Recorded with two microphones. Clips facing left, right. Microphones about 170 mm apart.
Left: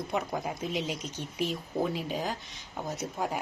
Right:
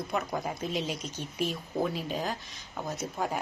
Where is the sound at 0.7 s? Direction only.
15° left (ahead or behind).